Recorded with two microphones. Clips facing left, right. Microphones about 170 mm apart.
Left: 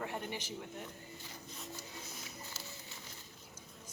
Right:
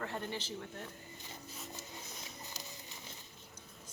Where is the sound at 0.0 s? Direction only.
15° left (ahead or behind).